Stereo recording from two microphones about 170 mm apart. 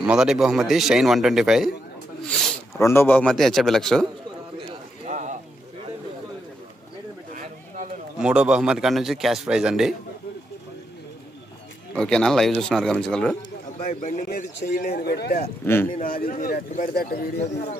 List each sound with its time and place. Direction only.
0.0 s a man's voice: 5° right (ahead or behind)
2.2 s snake: 5° left (ahead or behind)
2.7 s a man's voice: 15° left (ahead or behind)
5.0 s a sound: 45° right (ahead or behind)
7.3 s a sound: 50° right (ahead or behind)
8.2 s a man's voice: 5° right (ahead or behind)
11.9 s a man's voice: 5° left (ahead or behind)
13.7 s a man's voice: 45° left (ahead or behind); by 15.4 s 65° left (ahead or behind)
15.6 s speech: 15° left (ahead or behind)
15.9 s a man's voice: 55° left (ahead or behind)
16.9 s speech: 65° left (ahead or behind)